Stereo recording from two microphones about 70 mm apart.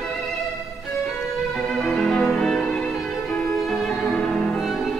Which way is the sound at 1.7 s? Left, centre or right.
Centre.